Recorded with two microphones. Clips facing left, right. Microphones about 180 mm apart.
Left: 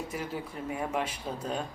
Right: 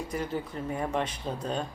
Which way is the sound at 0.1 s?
10° left (ahead or behind).